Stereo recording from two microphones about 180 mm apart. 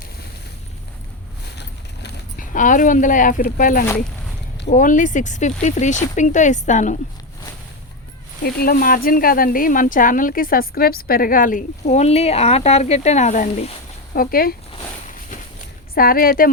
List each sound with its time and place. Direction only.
1.5 s boat: 70° left (ahead or behind)
2.4 s speech: 45° left (ahead or behind)
8.4 s speech: 55° left (ahead or behind); by 13.7 s 40° left (ahead or behind)
14.1 s speech: 55° left (ahead or behind)
16.0 s speech: 55° left (ahead or behind)